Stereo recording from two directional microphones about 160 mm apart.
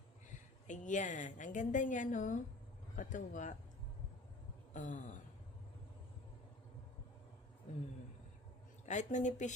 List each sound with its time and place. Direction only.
0.7 s a woman's voice: 50° left (ahead or behind)
4.7 s a woman's voice: 50° left (ahead or behind)
8.9 s a woman's voice: 50° left (ahead or behind)